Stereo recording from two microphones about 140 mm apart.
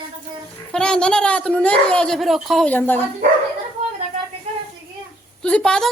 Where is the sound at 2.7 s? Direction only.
15° left (ahead or behind).